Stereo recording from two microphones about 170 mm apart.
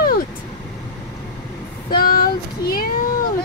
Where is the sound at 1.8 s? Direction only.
60° left (ahead or behind).